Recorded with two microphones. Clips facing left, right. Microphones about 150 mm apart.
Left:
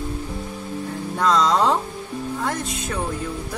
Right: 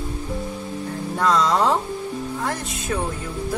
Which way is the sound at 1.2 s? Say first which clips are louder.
Left 1 dB; centre (ahead or behind).